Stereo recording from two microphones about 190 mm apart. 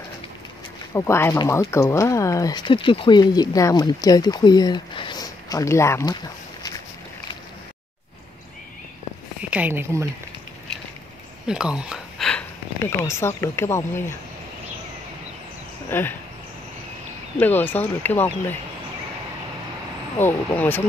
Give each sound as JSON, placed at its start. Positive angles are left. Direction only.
{"t": 0.9, "sound": "speech", "side_deg": 15}
{"t": 9.5, "sound": "a woman's voice", "side_deg": -10}
{"t": 11.4, "sound": "speech", "side_deg": -5}
{"t": 13.0, "sound": "speech", "side_deg": 15}
{"t": 15.9, "sound": "speech", "side_deg": 10}
{"t": 17.4, "sound": "speech", "side_deg": 10}
{"t": 20.2, "sound": "speech", "side_deg": 10}